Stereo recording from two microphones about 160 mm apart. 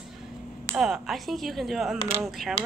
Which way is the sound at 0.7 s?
5° right (ahead or behind).